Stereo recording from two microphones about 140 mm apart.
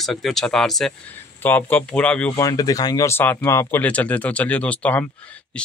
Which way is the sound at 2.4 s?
25° left (ahead or behind).